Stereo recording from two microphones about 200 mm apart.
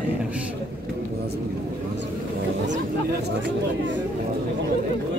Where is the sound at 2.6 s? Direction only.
60° right (ahead or behind).